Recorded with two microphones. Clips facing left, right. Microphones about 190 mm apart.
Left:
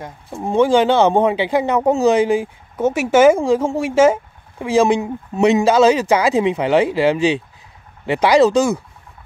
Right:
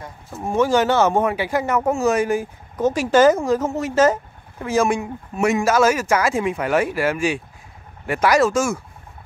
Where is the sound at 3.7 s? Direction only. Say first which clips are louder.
Left 4 dB; 15° left (ahead or behind).